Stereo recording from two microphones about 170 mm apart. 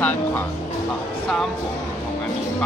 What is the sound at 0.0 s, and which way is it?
Music, 10° left (ahead or behind).